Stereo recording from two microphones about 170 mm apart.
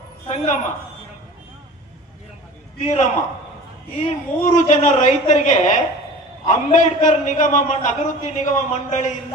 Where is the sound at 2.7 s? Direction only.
40° left (ahead or behind).